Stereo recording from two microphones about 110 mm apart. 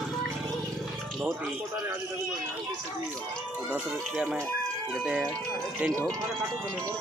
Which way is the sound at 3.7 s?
10° right (ahead or behind).